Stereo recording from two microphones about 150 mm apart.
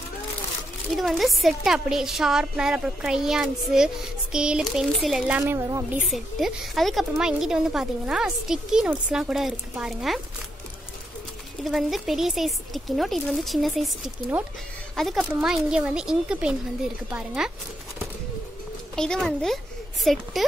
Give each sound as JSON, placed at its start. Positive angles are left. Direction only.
{"t": 0.9, "sound": "a woman's voice", "side_deg": 0}
{"t": 5.4, "sound": "speech", "side_deg": -20}
{"t": 6.0, "sound": "a woman's voice", "side_deg": 0}
{"t": 11.6, "sound": "a woman's voice", "side_deg": 0}
{"t": 18.9, "sound": "a woman's voice", "side_deg": 5}